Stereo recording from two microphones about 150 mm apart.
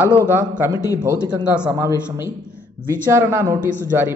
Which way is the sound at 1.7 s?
20° right (ahead or behind).